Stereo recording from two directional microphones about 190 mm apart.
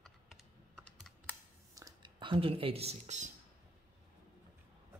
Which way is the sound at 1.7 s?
20° right (ahead or behind).